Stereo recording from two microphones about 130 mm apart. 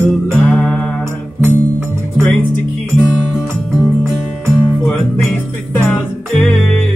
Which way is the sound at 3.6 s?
5° left (ahead or behind).